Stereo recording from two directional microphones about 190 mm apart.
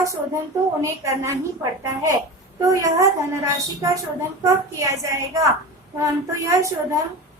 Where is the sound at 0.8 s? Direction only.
15° right (ahead or behind).